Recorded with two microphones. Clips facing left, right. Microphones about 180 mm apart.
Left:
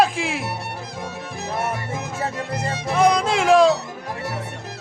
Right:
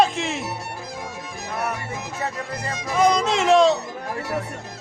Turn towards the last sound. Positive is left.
turn(degrees=5)  # may be behind; listen again after turning